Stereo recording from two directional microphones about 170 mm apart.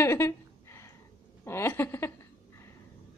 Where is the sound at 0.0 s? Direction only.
15° left (ahead or behind).